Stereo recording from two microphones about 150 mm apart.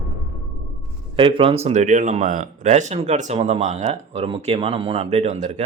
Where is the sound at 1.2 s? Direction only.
35° right (ahead or behind).